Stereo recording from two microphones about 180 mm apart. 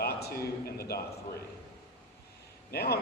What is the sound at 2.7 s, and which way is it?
Speech, 60° left (ahead or behind).